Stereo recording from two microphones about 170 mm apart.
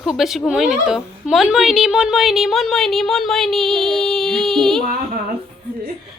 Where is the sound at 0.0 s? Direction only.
Centre (ahead or behind).